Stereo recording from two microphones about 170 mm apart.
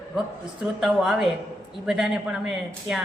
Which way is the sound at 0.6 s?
Centre (ahead or behind).